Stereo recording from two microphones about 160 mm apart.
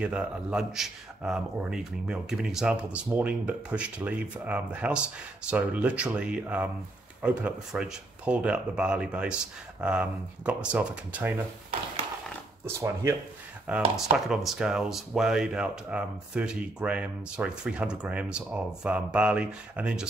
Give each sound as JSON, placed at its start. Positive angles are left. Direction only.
{"t": 0.0, "sound": "speech", "side_deg": -5}
{"t": 12.6, "sound": "speech", "side_deg": -15}